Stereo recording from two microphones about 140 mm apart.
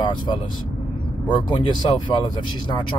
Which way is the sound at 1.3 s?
35° left (ahead or behind).